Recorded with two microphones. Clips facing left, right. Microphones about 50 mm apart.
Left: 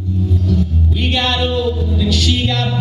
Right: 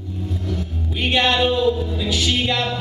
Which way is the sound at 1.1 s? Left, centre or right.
Right.